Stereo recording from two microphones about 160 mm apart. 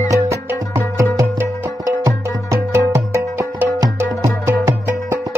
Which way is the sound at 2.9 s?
20° right (ahead or behind).